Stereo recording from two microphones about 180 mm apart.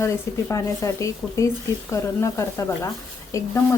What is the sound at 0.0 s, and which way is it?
Speech, 15° left (ahead or behind).